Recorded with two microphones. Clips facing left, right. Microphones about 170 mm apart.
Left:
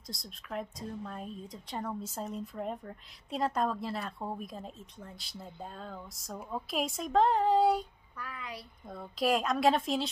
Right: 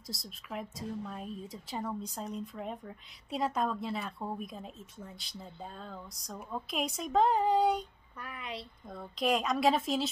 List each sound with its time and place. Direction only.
0.0 s speech: centre (ahead or behind)
8.2 s a woman's voice: 25° right (ahead or behind)
8.8 s speech: centre (ahead or behind)